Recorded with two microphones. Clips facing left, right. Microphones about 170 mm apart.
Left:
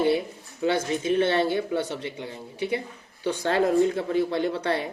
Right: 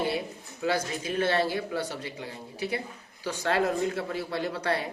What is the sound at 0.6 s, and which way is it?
Speech, 30° left (ahead or behind).